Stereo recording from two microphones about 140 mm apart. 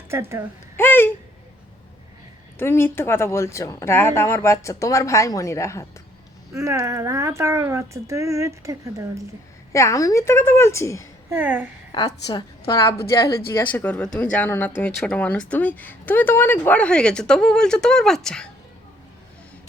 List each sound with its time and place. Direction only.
0.1 s speech: 20° right (ahead or behind)
0.8 s a sound: 15° left (ahead or behind)
2.6 s speech: 15° left (ahead or behind)
6.5 s speech: 20° right (ahead or behind)
9.7 s speech: 20° left (ahead or behind)
11.3 s a woman's voice: 15° right (ahead or behind)
11.9 s speech: 30° left (ahead or behind); by 18.4 s 5° left (ahead or behind)